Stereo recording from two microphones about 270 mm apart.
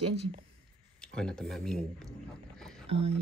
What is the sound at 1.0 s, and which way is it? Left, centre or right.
Speech, centre.